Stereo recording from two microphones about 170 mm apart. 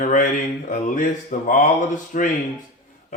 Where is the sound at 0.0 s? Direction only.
50° left (ahead or behind).